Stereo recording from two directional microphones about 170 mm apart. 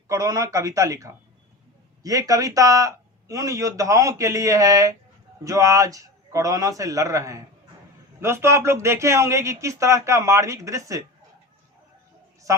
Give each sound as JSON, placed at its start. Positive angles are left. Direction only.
{"t": 0.1, "sound": "a man's voice", "side_deg": -20}
{"t": 12.5, "sound": "speech", "side_deg": -20}